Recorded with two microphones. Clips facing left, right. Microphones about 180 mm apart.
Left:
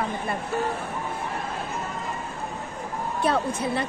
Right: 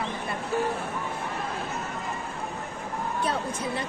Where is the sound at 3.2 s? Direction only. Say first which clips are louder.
Left 7 dB; 65° left (ahead or behind).